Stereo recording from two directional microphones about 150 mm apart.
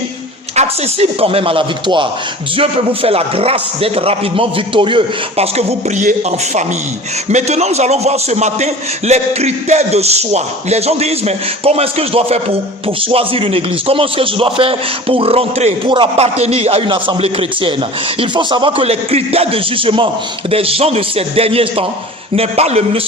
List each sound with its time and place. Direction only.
0.5 s a man's voice: 45° right (ahead or behind)